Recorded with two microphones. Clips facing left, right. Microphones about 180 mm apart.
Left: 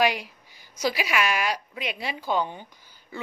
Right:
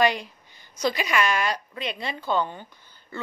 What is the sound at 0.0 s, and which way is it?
A woman's voice, 10° left (ahead or behind).